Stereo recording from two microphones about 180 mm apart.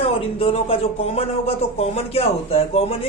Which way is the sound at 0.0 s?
30° left (ahead or behind).